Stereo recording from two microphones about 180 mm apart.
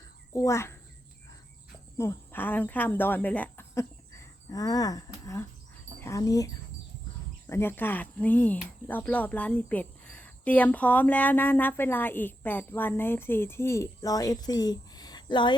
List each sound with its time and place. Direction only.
0.3 s a child's voice: 15° left (ahead or behind)
2.0 s speech: 10° left (ahead or behind)